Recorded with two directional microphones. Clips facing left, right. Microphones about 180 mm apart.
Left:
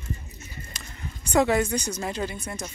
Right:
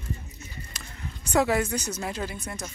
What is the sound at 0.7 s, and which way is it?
Speech, centre (ahead or behind).